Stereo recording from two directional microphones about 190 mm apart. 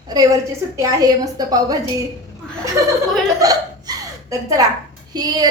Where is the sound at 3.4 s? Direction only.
20° right (ahead or behind).